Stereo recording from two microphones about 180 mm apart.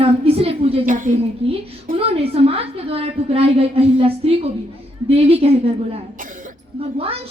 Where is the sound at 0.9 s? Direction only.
45° right (ahead or behind).